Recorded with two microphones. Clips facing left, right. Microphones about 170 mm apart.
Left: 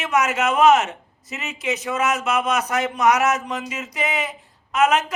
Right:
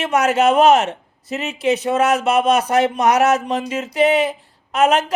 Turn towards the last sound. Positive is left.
turn(degrees=-30)  # may be behind; listen again after turning